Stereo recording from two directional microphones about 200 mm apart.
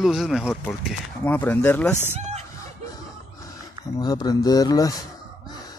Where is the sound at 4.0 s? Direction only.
20° left (ahead or behind).